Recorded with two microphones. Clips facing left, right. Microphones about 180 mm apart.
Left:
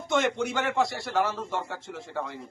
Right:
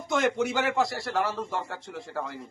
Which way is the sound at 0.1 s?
Centre (ahead or behind).